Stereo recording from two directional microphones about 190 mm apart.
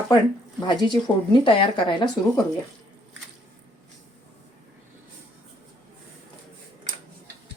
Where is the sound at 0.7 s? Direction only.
25° left (ahead or behind).